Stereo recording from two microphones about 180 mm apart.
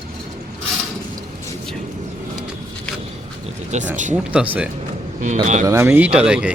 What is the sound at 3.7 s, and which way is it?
Speech, 40° right (ahead or behind).